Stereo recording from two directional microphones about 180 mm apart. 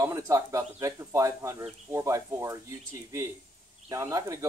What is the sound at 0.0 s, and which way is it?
Speech, 15° right (ahead or behind).